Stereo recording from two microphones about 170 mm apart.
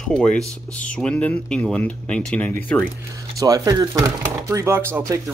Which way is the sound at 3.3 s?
20° right (ahead or behind).